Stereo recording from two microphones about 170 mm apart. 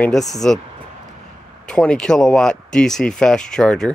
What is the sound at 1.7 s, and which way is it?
Speech, 5° left (ahead or behind).